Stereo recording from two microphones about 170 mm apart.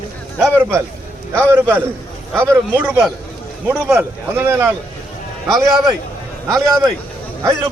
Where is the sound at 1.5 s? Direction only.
10° right (ahead or behind).